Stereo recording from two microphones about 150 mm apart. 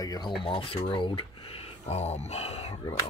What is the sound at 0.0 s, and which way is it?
Speech, 25° left (ahead or behind).